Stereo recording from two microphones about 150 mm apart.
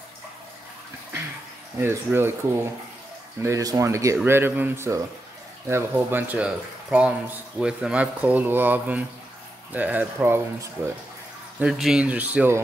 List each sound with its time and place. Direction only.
1.8 s speech: 15° right (ahead or behind)
11.6 s speech: 5° right (ahead or behind)